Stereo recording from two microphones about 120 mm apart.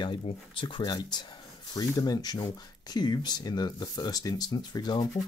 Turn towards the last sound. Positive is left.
turn(degrees=35)  # may be behind; listen again after turning